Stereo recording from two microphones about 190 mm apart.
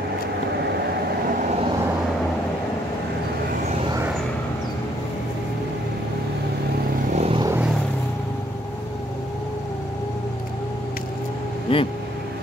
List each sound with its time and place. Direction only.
7.2 s vehicle: 30° right (ahead or behind)
11.7 s vehicle: 30° left (ahead or behind)